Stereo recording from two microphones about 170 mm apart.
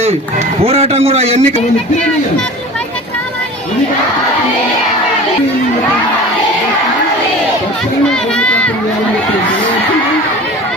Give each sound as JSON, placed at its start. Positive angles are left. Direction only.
{"t": 0.6, "sound": "a man's voice", "side_deg": -35}
{"t": 8.0, "sound": "run", "side_deg": 5}